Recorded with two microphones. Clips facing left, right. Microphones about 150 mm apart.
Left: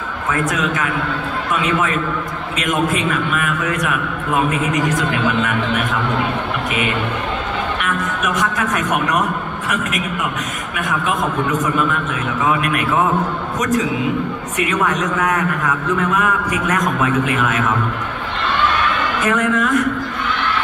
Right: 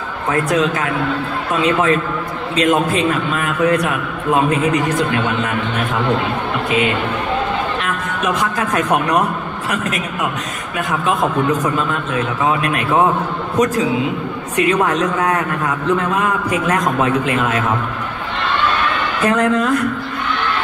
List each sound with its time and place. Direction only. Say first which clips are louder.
0.3 s a man's voice: right 4 dB; 30° right (ahead or behind)
7.8 s speech: right 1 dB; 30° right (ahead or behind)
12.4 s a man's voice: left 1 dB; 30° right (ahead or behind)
19.2 s a man's voice: right 3 dB; 30° right (ahead or behind)